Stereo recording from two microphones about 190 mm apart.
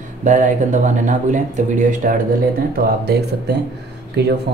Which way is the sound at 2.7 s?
60° right (ahead or behind).